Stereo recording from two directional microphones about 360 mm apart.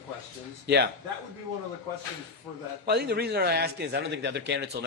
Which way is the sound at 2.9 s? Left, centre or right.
Right.